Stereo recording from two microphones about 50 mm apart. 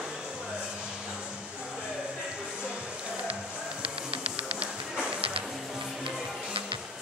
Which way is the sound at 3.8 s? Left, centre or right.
Right.